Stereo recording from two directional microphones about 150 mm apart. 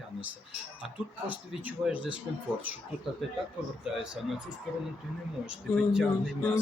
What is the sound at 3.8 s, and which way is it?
Speech, 5° right (ahead or behind).